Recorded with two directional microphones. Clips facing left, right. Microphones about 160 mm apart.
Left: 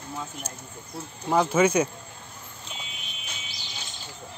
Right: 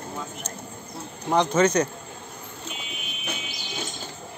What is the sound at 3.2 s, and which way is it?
Music, 50° right (ahead or behind).